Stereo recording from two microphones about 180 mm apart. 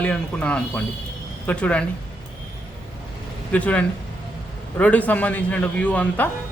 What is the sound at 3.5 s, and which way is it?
Speech, 10° left (ahead or behind).